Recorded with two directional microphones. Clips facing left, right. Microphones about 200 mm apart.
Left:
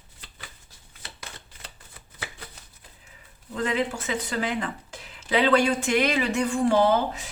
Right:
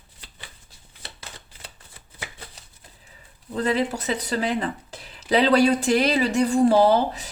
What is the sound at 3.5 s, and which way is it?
Speech, 35° right (ahead or behind).